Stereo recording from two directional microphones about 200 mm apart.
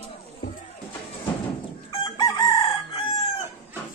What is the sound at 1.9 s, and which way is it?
Chicken, 20° left (ahead or behind).